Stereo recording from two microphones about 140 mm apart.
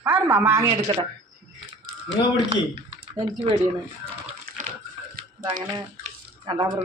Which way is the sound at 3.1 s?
35° right (ahead or behind).